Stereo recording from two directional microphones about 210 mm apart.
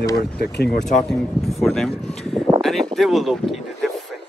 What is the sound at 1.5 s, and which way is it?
Speech, centre (ahead or behind).